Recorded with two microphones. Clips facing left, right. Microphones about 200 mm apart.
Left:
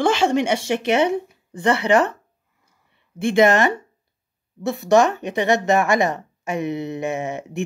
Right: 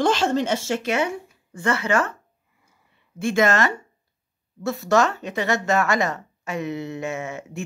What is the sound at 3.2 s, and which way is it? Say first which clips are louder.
Speech: left 4 dB; 15° left (ahead or behind).